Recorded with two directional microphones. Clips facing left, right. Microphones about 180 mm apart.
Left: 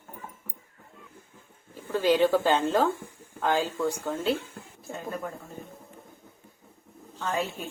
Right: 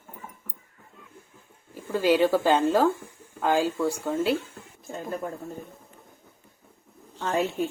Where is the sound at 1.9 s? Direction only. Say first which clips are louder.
Right 1 dB; 10° right (ahead or behind).